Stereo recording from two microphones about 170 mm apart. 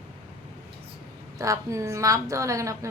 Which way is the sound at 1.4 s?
20° right (ahead or behind).